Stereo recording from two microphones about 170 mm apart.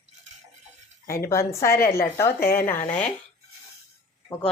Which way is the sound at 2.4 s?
60° left (ahead or behind).